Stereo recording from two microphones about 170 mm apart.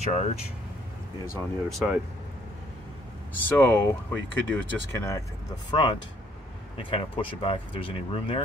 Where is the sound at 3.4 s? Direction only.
15° left (ahead or behind).